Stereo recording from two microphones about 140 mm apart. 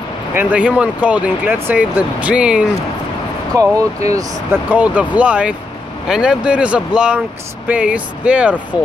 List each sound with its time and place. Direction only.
0.3 s speech: 10° right (ahead or behind)
3.5 s speech: 25° right (ahead or behind)